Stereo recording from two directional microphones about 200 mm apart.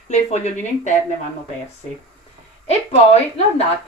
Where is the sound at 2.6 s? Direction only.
30° left (ahead or behind).